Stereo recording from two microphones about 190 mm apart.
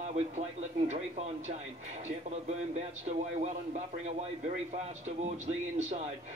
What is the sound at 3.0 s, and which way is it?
Speech, 35° right (ahead or behind).